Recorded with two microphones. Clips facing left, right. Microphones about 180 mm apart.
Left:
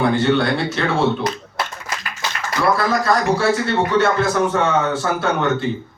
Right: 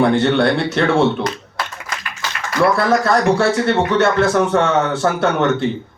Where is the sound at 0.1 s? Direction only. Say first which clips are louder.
Right 2 dB; 60° right (ahead or behind).